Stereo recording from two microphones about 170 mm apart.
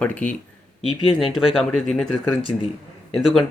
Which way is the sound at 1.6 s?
5° left (ahead or behind).